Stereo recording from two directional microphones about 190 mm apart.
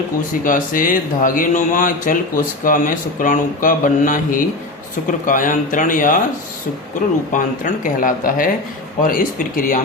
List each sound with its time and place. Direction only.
0.4 s speech: 45° left (ahead or behind)
7.3 s speech: 45° left (ahead or behind)